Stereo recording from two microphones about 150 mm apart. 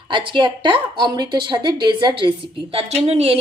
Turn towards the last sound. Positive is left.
turn(degrees=-40)  # may be behind; listen again after turning